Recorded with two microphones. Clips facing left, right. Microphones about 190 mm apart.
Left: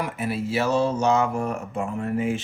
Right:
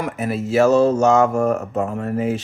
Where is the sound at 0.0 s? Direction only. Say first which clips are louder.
Right 4 dB; 45° right (ahead or behind).